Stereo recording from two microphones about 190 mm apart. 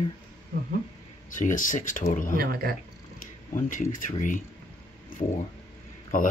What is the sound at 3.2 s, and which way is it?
Speech, 45° left (ahead or behind).